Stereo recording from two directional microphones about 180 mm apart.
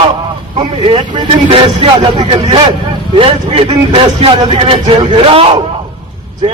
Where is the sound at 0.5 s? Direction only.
25° right (ahead or behind).